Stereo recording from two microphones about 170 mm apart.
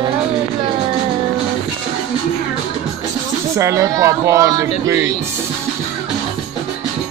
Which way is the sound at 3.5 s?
20° right (ahead or behind).